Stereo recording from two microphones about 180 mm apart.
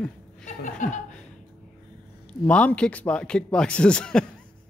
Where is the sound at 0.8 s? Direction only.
45° left (ahead or behind).